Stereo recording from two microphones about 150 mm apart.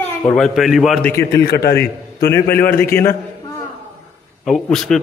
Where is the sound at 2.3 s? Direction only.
15° left (ahead or behind).